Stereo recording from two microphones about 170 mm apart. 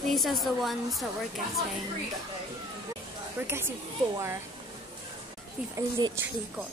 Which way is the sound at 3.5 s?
15° right (ahead or behind).